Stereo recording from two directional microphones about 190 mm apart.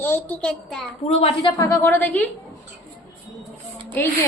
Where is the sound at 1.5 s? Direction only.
20° left (ahead or behind).